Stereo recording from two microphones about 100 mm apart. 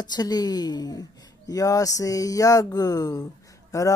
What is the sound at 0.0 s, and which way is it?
Speech, 45° left (ahead or behind).